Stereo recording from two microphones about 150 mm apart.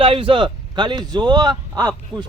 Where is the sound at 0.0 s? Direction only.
35° right (ahead or behind).